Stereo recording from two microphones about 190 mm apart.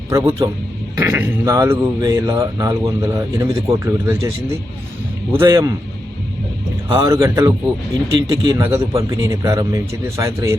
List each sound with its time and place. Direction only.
0.1 s speech: 15° right (ahead or behind)
5.4 s speech: 15° right (ahead or behind)
6.9 s speech: 15° right (ahead or behind)